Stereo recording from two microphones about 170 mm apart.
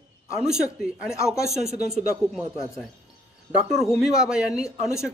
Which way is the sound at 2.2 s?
5° right (ahead or behind).